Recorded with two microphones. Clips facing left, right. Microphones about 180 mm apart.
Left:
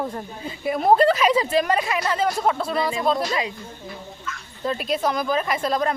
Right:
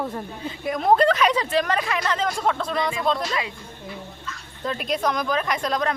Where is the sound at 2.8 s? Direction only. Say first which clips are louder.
Left 1 dB; 25° left (ahead or behind).